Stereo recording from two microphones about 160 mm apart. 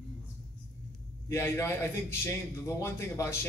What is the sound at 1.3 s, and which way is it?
A man's voice, 15° left (ahead or behind).